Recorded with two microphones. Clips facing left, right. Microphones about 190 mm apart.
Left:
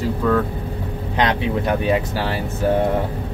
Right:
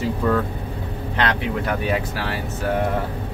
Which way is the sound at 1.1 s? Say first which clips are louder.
Left 3 dB; 20° left (ahead or behind).